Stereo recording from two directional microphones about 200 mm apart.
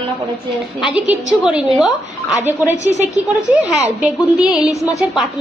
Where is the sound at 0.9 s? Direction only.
5° right (ahead or behind).